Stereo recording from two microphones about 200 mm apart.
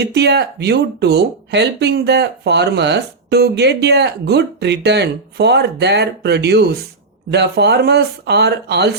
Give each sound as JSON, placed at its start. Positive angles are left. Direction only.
{"t": 0.0, "sound": "speech", "side_deg": -55}